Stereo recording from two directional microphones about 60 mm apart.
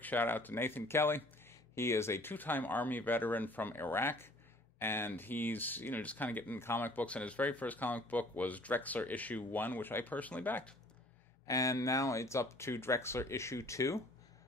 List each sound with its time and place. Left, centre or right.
0.0 s speech: left
2.3 s speech: left
11.4 s speech: left